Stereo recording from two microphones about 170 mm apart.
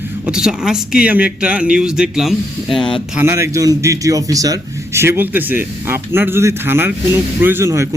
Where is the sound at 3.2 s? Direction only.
15° right (ahead or behind).